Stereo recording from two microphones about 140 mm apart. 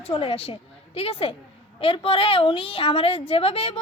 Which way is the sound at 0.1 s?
40° left (ahead or behind).